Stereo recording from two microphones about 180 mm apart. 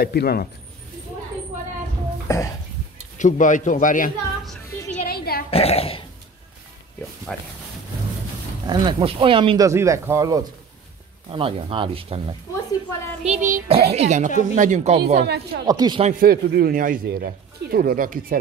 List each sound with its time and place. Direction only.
0.0 s speech: 60° left (ahead or behind)
2.2 s speech: 15° left (ahead or behind)
3.2 s a man's voice: 45° left (ahead or behind)
5.0 s oink: 60° left (ahead or behind)
5.5 s burping: 35° left (ahead or behind)
7.3 s speech: 5° left (ahead or behind)
8.6 s speech: 30° right (ahead or behind)
11.2 s speech: 30° right (ahead or behind)
13.2 s music: 40° right (ahead or behind)
14.4 s speech: 45° right (ahead or behind)
15.2 s a woman's voice: 65° right (ahead or behind)
15.6 s speech: 20° right (ahead or behind)
16.0 s speech: 50° right (ahead or behind)